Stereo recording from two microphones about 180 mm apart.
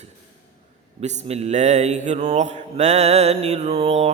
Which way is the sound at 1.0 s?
40° right (ahead or behind).